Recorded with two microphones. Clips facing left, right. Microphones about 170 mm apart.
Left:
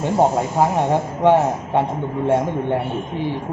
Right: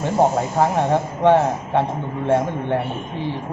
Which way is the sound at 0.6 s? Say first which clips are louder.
Even; 10° left (ahead or behind).